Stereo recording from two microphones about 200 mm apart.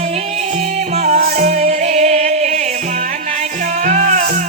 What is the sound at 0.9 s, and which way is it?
Music, 35° right (ahead or behind).